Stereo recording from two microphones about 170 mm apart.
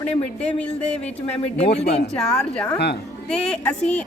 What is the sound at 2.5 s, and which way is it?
A woman's voice, 5° left (ahead or behind).